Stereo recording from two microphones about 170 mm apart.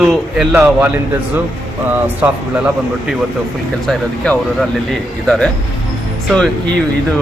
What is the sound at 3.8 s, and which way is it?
Speech, centre (ahead or behind).